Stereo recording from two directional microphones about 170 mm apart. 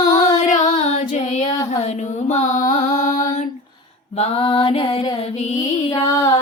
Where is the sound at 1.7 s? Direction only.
40° left (ahead or behind).